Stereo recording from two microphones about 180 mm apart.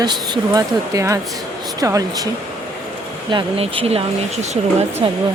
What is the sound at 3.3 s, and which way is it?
Speech, 30° right (ahead or behind).